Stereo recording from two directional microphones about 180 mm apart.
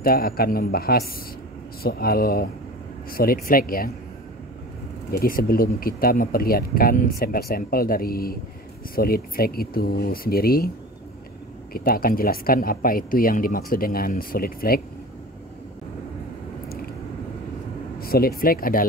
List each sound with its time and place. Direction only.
0.0 s speech: 55° left (ahead or behind)
5.1 s speech: 55° left (ahead or behind)
11.7 s speech: 55° left (ahead or behind)
17.9 s speech: 55° left (ahead or behind)